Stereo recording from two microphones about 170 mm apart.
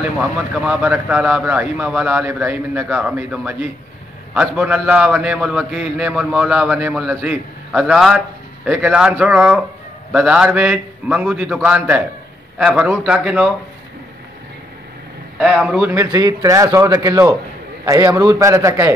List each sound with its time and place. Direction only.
0.7 s a man's voice: 10° right (ahead or behind)
15.3 s a man's voice: 5° right (ahead or behind)
15.9 s a man's voice: 20° right (ahead or behind)